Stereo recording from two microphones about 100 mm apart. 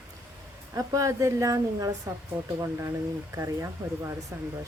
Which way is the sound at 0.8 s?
30° right (ahead or behind).